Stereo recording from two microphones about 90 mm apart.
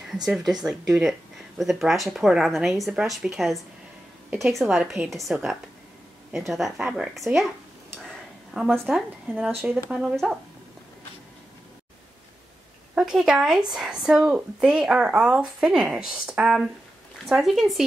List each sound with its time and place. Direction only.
0.0 s speech: 5° right (ahead or behind)
8.5 s speech: centre (ahead or behind)
9.6 s speech: 25° right (ahead or behind)
9.8 s speech: 10° right (ahead or behind)
12.9 s speech: 10° right (ahead or behind)